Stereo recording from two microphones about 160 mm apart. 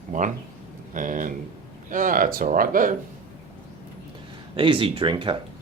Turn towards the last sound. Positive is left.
turn(degrees=-30)  # may be behind; listen again after turning